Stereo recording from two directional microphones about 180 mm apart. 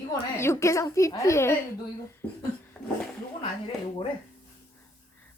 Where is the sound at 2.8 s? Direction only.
5° left (ahead or behind).